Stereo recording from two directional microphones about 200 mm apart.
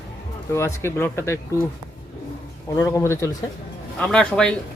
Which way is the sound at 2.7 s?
15° left (ahead or behind).